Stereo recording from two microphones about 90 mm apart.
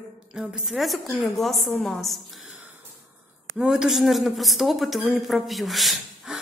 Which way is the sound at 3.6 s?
5° right (ahead or behind).